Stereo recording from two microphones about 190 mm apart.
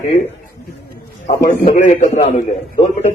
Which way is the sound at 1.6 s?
35° left (ahead or behind).